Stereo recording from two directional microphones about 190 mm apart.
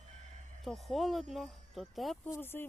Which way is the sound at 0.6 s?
Centre (ahead or behind).